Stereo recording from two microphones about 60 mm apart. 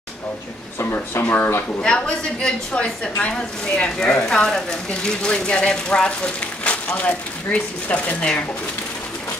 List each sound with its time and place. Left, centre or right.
0.7 s speech: left
1.2 s speech: left
1.8 s a woman's voice: centre
4.5 s a woman's voice: centre
5.2 s speech: centre